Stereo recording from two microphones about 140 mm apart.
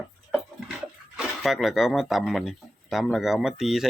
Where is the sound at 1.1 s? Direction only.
Centre (ahead or behind).